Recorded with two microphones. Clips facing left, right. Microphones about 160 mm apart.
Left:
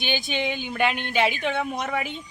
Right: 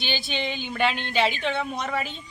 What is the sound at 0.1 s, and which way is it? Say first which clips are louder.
A woman's voice: left 3 dB; 15° left (ahead or behind).